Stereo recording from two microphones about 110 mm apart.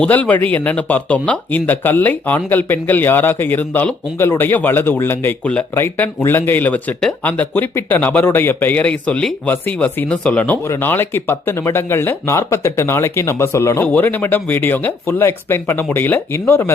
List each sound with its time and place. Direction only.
0.0 s speech: 15° left (ahead or behind)